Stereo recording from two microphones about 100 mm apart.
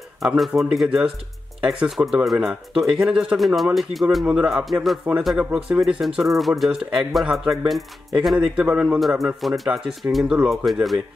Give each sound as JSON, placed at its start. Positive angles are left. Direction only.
{"t": 0.2, "sound": "speech", "side_deg": -5}
{"t": 5.1, "sound": "speech", "side_deg": -15}